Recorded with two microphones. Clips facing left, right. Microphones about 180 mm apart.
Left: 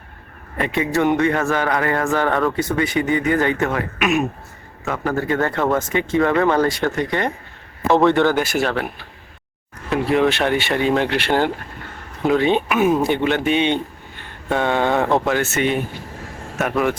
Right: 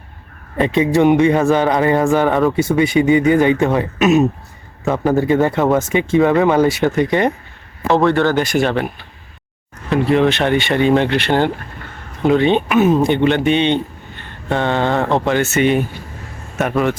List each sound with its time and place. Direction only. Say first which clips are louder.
0.6 s speech: right 6 dB; 20° right (ahead or behind)
8.3 s speech: right 3 dB; 5° left (ahead or behind)
9.9 s speech: right 3 dB; 5° left (ahead or behind)